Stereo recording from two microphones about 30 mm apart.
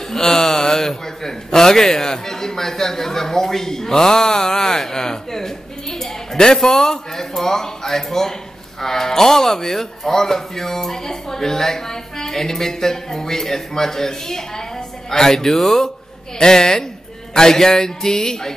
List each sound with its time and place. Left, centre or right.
0.0 s a man's voice: centre
16.3 s speech: left